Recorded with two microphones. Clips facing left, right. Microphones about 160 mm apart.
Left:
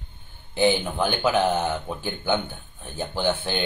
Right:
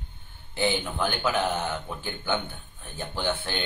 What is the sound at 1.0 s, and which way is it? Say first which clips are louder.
Speech: left 4 dB; 20° left (ahead or behind).